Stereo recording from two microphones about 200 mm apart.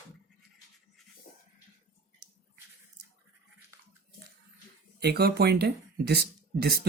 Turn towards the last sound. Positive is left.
turn(degrees=-50)  # may be behind; listen again after turning